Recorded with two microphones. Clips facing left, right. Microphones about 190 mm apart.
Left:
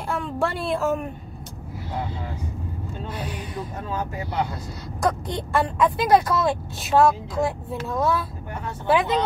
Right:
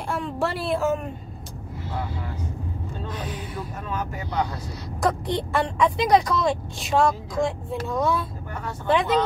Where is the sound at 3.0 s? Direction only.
10° left (ahead or behind).